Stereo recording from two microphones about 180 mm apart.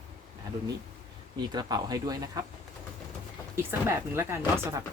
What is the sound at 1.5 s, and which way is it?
Speech, 20° right (ahead or behind).